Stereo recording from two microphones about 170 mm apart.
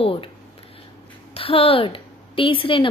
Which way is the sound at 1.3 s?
35° left (ahead or behind).